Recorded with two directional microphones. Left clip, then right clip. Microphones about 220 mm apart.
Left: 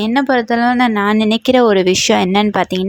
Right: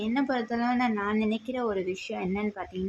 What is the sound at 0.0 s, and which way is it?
Speech, 40° left (ahead or behind).